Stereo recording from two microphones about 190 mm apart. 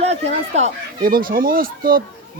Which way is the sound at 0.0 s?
35° right (ahead or behind).